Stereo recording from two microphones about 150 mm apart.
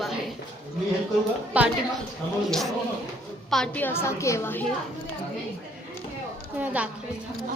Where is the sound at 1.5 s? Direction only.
10° right (ahead or behind).